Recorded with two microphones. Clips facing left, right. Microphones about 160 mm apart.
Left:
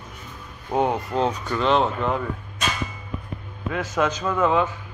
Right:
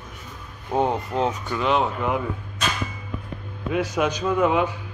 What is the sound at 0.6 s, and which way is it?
Speech, 15° left (ahead or behind).